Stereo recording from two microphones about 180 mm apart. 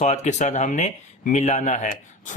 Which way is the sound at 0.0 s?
40° left (ahead or behind).